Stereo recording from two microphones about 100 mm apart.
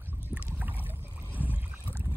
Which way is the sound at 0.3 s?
5° right (ahead or behind).